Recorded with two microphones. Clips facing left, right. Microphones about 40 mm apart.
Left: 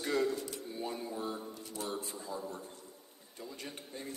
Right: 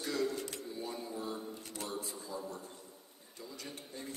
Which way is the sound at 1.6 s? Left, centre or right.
Right.